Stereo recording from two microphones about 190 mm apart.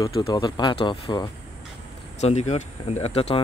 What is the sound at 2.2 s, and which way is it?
Speech, 35° left (ahead or behind).